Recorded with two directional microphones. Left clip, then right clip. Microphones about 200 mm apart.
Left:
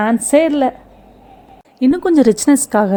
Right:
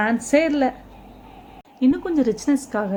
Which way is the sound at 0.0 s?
40° left (ahead or behind).